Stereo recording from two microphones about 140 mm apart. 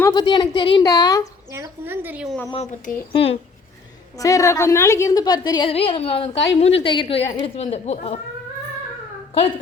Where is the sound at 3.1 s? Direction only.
40° left (ahead or behind).